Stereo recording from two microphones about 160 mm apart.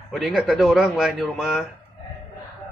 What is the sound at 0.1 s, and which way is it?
Speech, centre (ahead or behind).